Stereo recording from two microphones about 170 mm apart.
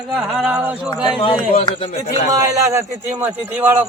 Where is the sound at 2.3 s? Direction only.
20° right (ahead or behind).